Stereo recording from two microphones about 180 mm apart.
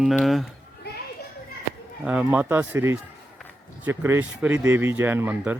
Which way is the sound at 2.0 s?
5° right (ahead or behind).